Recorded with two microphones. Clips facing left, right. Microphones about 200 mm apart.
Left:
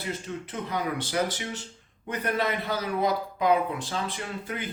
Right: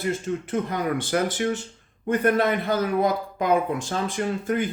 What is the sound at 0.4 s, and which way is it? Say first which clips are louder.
Speech: right 4 dB; 50° right (ahead or behind).